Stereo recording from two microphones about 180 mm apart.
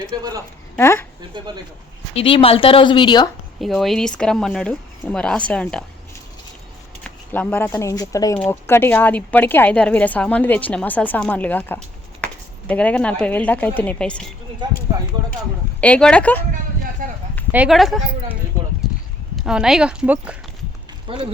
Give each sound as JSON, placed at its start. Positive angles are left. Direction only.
{"t": 0.1, "sound": "speech", "side_deg": -20}
{"t": 0.8, "sound": "speech", "side_deg": 15}
{"t": 2.1, "sound": "a woman's voice", "side_deg": 30}
{"t": 3.8, "sound": "speech", "side_deg": 0}
{"t": 7.0, "sound": "speech", "side_deg": 10}
{"t": 15.8, "sound": "speech", "side_deg": 5}
{"t": 17.0, "sound": "a sound", "side_deg": -50}
{"t": 17.5, "sound": "speech", "side_deg": -5}
{"t": 18.8, "sound": "a sound", "side_deg": -5}
{"t": 19.5, "sound": "speech", "side_deg": -5}
{"t": 21.1, "sound": "speech", "side_deg": -30}